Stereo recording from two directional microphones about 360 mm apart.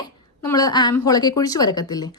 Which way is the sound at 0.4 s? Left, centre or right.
Centre.